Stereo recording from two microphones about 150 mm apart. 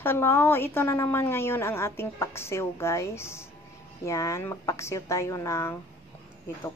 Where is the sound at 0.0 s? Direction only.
15° left (ahead or behind).